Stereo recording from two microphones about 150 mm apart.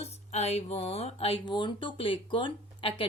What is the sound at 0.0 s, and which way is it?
Speech, 45° left (ahead or behind).